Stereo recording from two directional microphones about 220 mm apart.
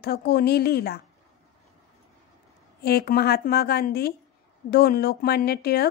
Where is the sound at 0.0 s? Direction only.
45° left (ahead or behind).